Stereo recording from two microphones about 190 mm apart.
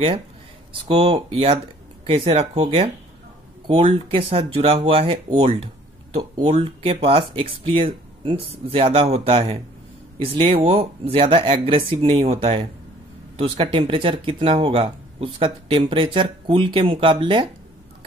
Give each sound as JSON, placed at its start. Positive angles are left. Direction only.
{"t": 0.8, "sound": "speech", "side_deg": -30}